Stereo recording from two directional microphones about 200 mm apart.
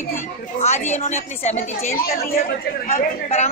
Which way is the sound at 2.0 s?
50° left (ahead or behind).